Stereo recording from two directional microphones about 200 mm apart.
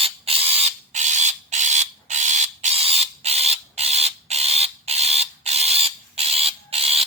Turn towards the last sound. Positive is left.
turn(degrees=-30)  # may be behind; listen again after turning